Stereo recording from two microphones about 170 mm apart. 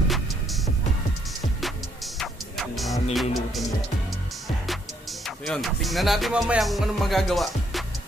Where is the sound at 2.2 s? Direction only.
Centre (ahead or behind).